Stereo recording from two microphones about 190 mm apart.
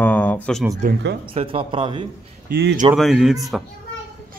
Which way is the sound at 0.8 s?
45° right (ahead or behind).